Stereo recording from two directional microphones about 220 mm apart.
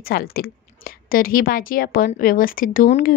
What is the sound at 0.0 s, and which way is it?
A woman's voice, 45° left (ahead or behind).